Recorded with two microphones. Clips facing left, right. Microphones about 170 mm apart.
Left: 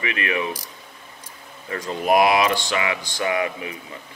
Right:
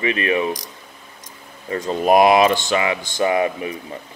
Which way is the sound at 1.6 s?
30° right (ahead or behind).